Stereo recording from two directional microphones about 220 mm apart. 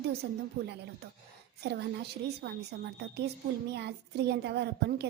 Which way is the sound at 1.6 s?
45° right (ahead or behind).